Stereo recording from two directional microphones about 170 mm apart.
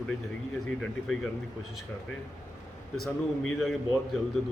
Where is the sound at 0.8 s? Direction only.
5° left (ahead or behind).